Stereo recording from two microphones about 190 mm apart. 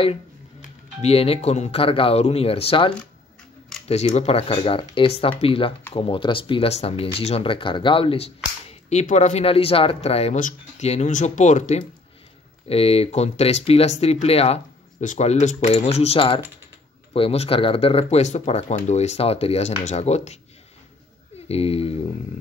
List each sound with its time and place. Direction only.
0.6 s speech: 30° left (ahead or behind)
3.9 s speech: 35° left (ahead or behind)
21.5 s speech: 30° left (ahead or behind)